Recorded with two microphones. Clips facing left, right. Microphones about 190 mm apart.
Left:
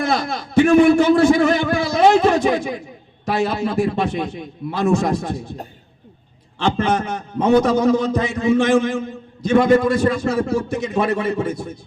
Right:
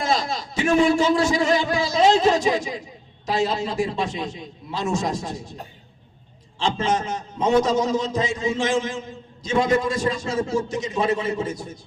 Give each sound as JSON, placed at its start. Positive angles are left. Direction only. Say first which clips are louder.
{"t": 0.0, "sound": "a man's voice", "louder": "left 3 dB", "side_deg": 60}